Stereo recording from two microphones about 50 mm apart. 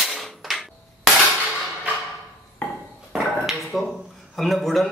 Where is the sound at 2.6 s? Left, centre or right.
Left.